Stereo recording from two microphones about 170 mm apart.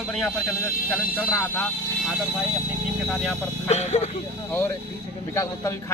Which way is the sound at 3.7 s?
40° left (ahead or behind).